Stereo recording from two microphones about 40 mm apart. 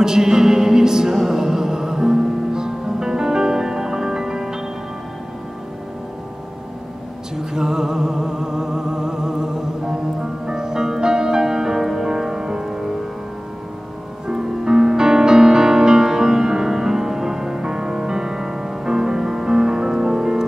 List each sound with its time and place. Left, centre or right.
0.0 s music: centre
7.3 s music: centre
14.2 s music: centre